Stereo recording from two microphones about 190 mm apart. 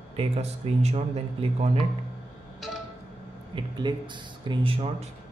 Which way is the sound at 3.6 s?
25° right (ahead or behind).